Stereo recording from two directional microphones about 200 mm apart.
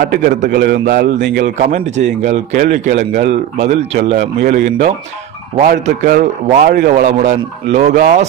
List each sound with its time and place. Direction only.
0.0 s a man's voice: 45° right (ahead or behind)
1.6 s a man's voice: 40° right (ahead or behind)
7.9 s a man's voice: 40° right (ahead or behind)